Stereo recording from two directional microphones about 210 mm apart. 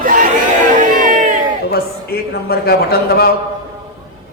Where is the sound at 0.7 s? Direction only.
40° right (ahead or behind).